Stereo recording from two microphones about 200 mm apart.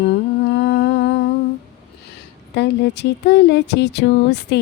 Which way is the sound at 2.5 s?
60° left (ahead or behind).